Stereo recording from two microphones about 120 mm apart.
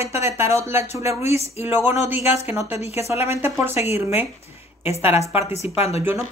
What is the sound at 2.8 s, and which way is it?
Speech, 60° left (ahead or behind).